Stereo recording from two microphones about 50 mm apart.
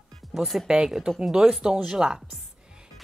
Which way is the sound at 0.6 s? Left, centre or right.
Centre.